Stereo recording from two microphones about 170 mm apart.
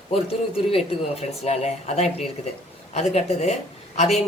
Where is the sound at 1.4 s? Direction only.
40° left (ahead or behind).